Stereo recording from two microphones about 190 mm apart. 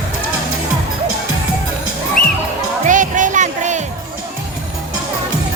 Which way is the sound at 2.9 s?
40° right (ahead or behind).